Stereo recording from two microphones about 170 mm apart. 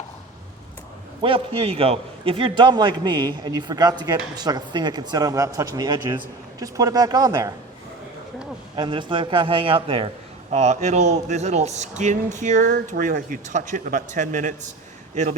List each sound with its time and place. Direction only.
1.2 s a man's voice: 35° right (ahead or behind)
8.7 s a man's voice: 30° right (ahead or behind); by 15.4 s 45° right (ahead or behind)